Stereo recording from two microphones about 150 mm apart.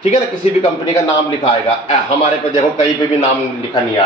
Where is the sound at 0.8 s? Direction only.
20° left (ahead or behind).